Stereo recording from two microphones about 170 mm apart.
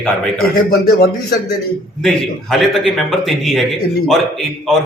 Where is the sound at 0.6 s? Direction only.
70° left (ahead or behind).